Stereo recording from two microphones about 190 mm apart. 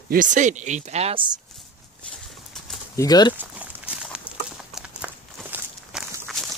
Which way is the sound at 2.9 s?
20° left (ahead or behind).